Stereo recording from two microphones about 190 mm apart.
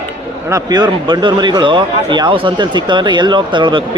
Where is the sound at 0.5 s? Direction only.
20° right (ahead or behind).